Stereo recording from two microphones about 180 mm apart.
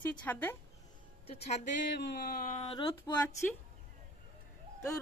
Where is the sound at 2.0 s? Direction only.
60° left (ahead or behind).